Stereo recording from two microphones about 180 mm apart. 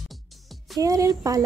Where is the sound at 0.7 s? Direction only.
20° right (ahead or behind).